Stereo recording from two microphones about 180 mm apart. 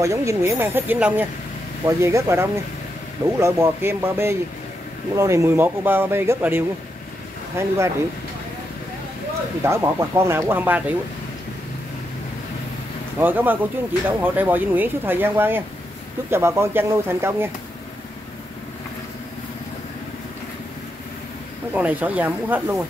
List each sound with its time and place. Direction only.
0.0 s speech: 15° right (ahead or behind)
9.6 s speech: 15° right (ahead or behind)
13.2 s speech: 10° right (ahead or behind)
21.7 s speech: 10° right (ahead or behind)